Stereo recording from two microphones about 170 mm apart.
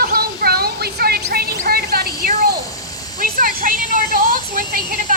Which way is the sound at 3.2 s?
55° right (ahead or behind).